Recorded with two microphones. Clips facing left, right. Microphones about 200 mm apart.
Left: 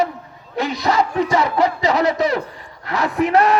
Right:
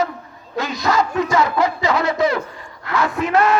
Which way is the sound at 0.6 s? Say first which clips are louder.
Left 1 dB; 30° left (ahead or behind).